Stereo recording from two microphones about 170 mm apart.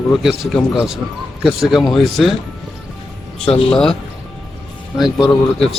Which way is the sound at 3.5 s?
35° left (ahead or behind).